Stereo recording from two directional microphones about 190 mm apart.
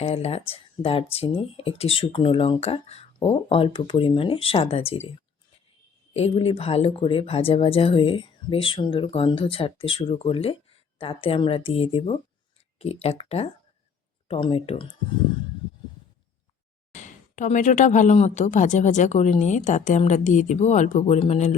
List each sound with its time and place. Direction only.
0.0 s speech: 30° left (ahead or behind)
6.1 s speech: 30° left (ahead or behind)
16.9 s speech: 40° left (ahead or behind)